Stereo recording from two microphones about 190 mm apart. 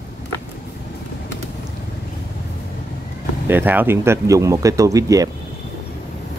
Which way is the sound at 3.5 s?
10° right (ahead or behind).